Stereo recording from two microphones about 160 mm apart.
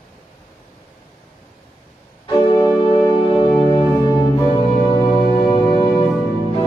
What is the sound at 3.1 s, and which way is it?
Music, 30° left (ahead or behind).